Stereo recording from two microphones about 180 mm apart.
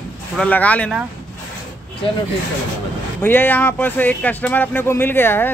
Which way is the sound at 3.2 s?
10° left (ahead or behind).